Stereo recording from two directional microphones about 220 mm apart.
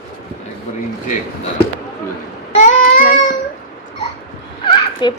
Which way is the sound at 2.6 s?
35° left (ahead or behind).